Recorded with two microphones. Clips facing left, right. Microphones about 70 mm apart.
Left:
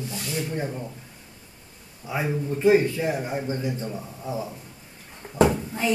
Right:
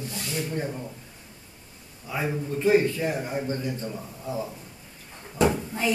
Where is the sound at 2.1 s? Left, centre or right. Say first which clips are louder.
Left 2 dB; centre.